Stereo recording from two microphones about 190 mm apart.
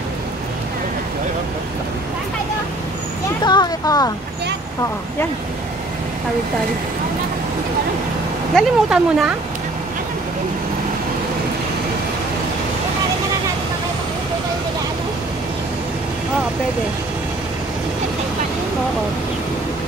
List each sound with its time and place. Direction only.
3.4 s speech: 20° left (ahead or behind)
8.5 s speech: 5° right (ahead or behind)